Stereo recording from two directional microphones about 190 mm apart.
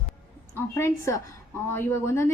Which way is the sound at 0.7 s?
15° left (ahead or behind).